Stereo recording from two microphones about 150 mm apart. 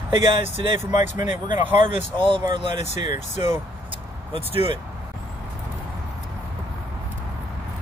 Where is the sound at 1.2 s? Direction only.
55° left (ahead or behind).